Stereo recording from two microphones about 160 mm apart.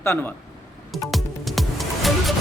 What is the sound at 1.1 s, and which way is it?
Music, centre (ahead or behind).